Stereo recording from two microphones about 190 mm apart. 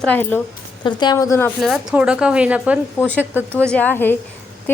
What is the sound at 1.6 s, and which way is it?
A woman's voice, 5° right (ahead or behind).